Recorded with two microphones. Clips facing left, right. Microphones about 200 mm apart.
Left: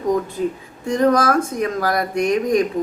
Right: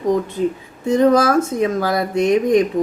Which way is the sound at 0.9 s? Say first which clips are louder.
Right 3 dB; 25° right (ahead or behind).